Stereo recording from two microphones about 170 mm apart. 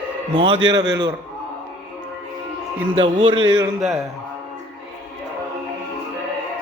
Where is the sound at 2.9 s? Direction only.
30° right (ahead or behind).